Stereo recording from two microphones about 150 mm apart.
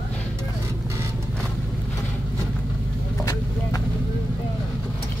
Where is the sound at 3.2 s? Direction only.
20° left (ahead or behind).